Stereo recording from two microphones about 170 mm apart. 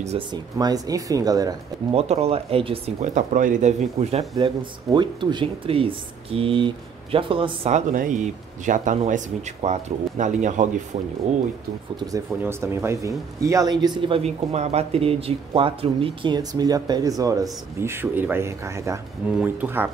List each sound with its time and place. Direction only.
0.3 s a man's voice: 25° right (ahead or behind)
2.0 s speech: 35° right (ahead or behind)
4.9 s speech: 25° right (ahead or behind)
7.7 s speech: 50° right (ahead or behind)
12.0 s a man's voice: 20° right (ahead or behind)